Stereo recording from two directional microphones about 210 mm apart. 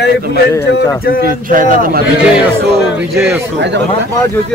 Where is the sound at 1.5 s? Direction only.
40° right (ahead or behind).